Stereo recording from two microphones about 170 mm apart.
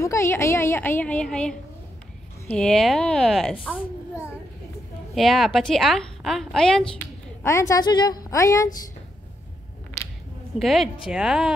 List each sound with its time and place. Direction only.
0.0 s a woman's voice: 15° left (ahead or behind)
5.1 s a woman's voice: centre (ahead or behind)
7.4 s a woman's voice: 20° left (ahead or behind)
10.6 s a woman's voice: centre (ahead or behind)